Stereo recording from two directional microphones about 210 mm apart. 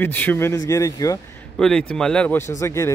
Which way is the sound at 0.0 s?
10° left (ahead or behind).